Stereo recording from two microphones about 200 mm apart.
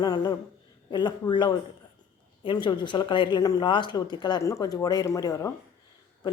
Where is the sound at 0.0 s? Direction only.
20° left (ahead or behind).